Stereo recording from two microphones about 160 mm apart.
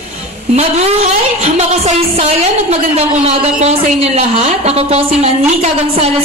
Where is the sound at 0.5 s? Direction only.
45° right (ahead or behind).